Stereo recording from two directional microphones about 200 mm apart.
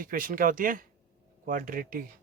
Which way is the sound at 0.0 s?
45° right (ahead or behind).